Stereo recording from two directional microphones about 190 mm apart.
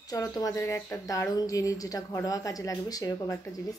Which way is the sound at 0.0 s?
20° left (ahead or behind).